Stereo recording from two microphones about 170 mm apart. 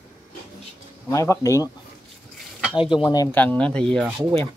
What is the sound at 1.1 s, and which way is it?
Speech, 20° left (ahead or behind).